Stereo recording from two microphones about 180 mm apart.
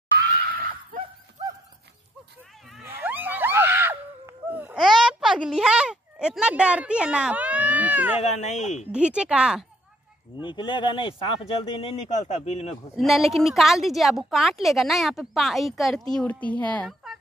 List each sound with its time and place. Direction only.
0.5 s screaming: 55° right (ahead or behind)
2.8 s screaming: 10° right (ahead or behind)
4.8 s a sound: centre (ahead or behind)
8.2 s speech: 40° left (ahead or behind)
8.9 s a woman's voice: 5° right (ahead or behind)
10.4 s speech: 25° left (ahead or behind)
12.9 s a woman's voice: centre (ahead or behind)